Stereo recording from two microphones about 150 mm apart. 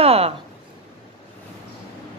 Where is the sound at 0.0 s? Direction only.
40° right (ahead or behind).